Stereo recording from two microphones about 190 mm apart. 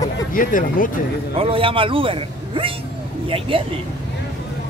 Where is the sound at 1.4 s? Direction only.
30° right (ahead or behind).